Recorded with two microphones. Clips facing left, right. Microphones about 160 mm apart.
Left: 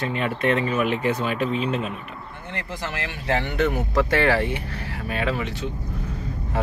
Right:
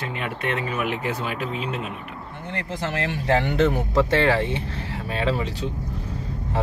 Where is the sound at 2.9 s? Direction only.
35° right (ahead or behind).